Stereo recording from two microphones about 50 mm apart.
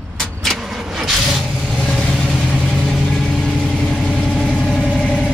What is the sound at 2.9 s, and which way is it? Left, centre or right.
Vehicle, centre.